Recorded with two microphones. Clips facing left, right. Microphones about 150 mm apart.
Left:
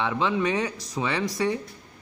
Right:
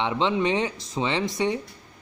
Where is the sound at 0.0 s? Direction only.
20° right (ahead or behind).